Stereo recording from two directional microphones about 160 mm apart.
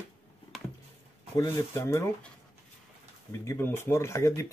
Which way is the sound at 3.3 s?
15° left (ahead or behind).